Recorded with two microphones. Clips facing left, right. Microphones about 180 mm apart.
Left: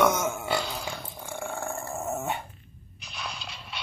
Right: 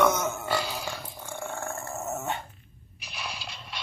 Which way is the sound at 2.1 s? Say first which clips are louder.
Left 1 dB; 15° left (ahead or behind).